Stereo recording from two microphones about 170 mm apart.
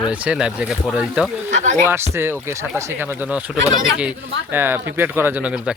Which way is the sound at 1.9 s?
15° right (ahead or behind).